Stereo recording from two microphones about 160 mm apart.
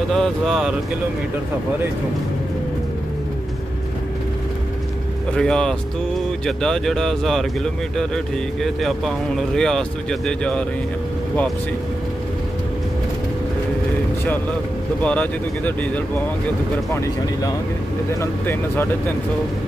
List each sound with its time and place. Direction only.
0.1 s speech: centre (ahead or behind)
5.3 s speech: 5° left (ahead or behind)
9.6 s speech: 5° left (ahead or behind)
15.0 s speech: 10° left (ahead or behind)
16.9 s speech: 20° left (ahead or behind)